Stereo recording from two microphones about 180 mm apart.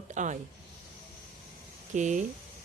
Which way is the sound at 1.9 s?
45° right (ahead or behind).